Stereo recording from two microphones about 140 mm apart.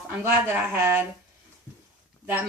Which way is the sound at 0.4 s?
15° right (ahead or behind).